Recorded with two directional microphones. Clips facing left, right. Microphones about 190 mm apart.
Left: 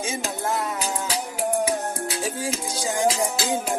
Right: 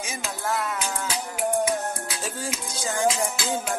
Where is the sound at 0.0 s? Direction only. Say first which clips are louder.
Left 5 dB; 30° left (ahead or behind).